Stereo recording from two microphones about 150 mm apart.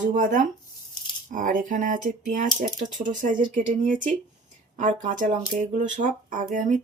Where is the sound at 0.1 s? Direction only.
60° right (ahead or behind).